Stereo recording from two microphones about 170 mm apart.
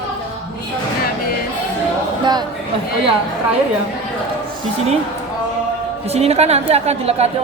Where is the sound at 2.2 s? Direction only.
25° right (ahead or behind).